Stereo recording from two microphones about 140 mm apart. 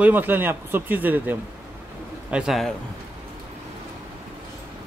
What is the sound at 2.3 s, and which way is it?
Speech, centre (ahead or behind).